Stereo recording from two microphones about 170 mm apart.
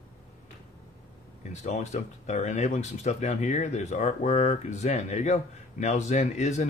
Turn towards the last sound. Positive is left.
turn(degrees=45)  # may be behind; listen again after turning